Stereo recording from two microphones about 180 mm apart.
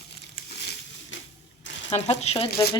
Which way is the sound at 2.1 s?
35° left (ahead or behind).